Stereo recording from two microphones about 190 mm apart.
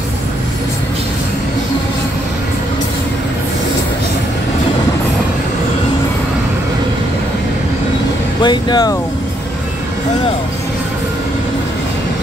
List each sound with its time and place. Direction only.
8.4 s speech: 25° left (ahead or behind)